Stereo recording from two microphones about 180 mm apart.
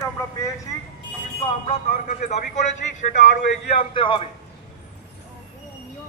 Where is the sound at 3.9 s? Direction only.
30° left (ahead or behind).